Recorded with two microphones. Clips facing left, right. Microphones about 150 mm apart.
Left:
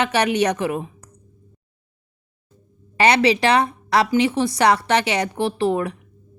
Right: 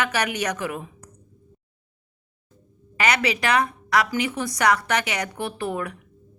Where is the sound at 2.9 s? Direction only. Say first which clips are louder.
Left 7 dB; 30° left (ahead or behind).